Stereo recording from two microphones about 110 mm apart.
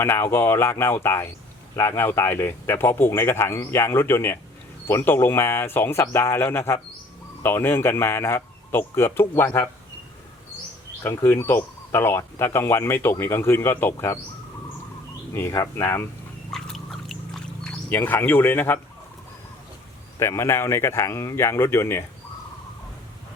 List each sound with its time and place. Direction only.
0.0 s speech: 20° left (ahead or behind)
11.0 s speech: 20° left (ahead or behind)
15.3 s speech: 25° left (ahead or behind)
16.5 s a sound: 5° left (ahead or behind)
17.8 s speech: 15° left (ahead or behind)
20.1 s speech: 25° left (ahead or behind)